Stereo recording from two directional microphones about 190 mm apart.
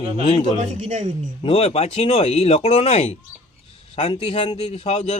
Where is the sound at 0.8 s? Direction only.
40° right (ahead or behind).